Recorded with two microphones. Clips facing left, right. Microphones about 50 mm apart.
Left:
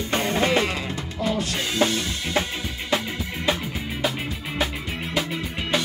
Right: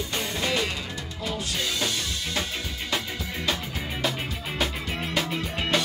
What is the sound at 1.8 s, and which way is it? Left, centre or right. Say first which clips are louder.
Drum kit: left 11 dB; left.